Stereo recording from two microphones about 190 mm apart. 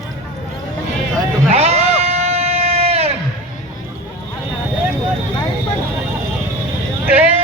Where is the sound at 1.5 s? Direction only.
35° right (ahead or behind).